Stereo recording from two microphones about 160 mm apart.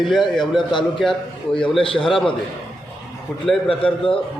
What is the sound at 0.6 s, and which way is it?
Speech, 30° left (ahead or behind).